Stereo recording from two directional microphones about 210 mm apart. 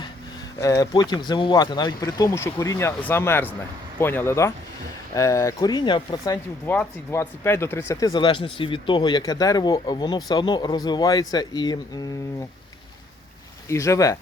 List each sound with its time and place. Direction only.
0.6 s speech: 15° left (ahead or behind)
13.7 s speech: 15° left (ahead or behind)